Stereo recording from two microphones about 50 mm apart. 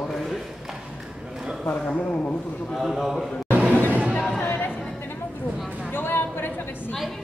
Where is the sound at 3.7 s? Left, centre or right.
Right.